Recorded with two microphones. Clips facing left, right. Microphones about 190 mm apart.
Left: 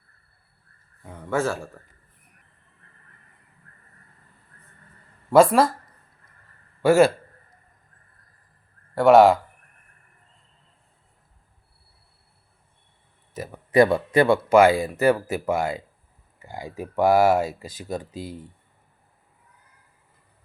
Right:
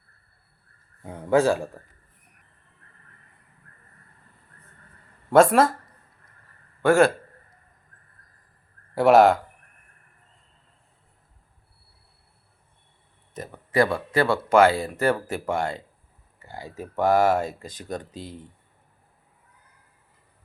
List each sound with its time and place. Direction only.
1.1 s a man's voice: 15° right (ahead or behind)
5.3 s speech: centre (ahead or behind)
6.8 s speech: 5° left (ahead or behind)
9.0 s speech: centre (ahead or behind)
13.7 s speech: 20° left (ahead or behind)